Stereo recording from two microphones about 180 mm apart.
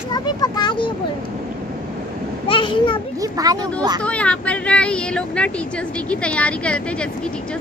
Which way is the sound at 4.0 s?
5° left (ahead or behind).